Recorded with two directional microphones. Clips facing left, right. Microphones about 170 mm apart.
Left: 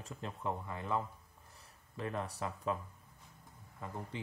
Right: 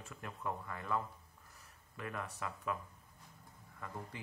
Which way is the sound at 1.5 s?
30° left (ahead or behind).